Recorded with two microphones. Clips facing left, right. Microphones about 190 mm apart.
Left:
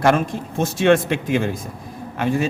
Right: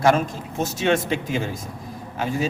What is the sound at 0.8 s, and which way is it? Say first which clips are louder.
Speech: left 6 dB; 55° left (ahead or behind).